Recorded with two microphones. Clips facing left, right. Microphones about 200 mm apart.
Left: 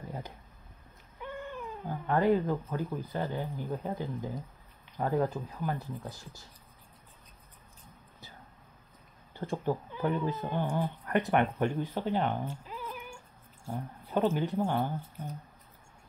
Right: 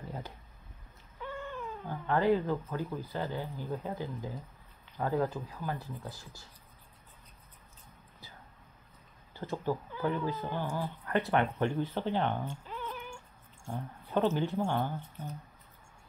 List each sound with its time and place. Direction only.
1.2 s cat: 15° left (ahead or behind)
2.1 s speech: 20° left (ahead or behind)
9.3 s speech: 20° left (ahead or behind)